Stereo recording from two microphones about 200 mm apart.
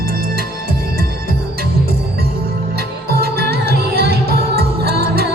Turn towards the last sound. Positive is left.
turn(degrees=-50)  # may be behind; listen again after turning